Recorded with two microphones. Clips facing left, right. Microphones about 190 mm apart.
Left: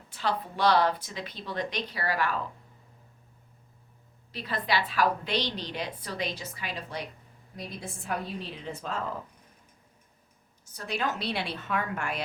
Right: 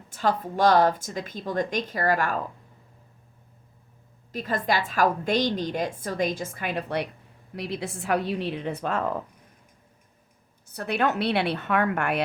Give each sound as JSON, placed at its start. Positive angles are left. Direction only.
{"t": 0.1, "sound": "a woman's voice", "side_deg": -45}
{"t": 4.3, "sound": "a woman's voice", "side_deg": -45}
{"t": 7.5, "sound": "a woman's voice", "side_deg": -80}
{"t": 10.7, "sound": "a woman's voice", "side_deg": -60}